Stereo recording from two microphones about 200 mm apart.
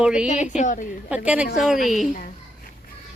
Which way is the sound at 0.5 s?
40° left (ahead or behind).